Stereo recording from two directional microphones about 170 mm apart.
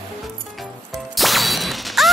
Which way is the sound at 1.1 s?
Centre (ahead or behind).